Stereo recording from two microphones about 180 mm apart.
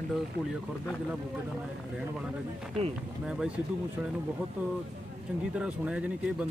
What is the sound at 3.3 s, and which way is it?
Speech, 5° right (ahead or behind).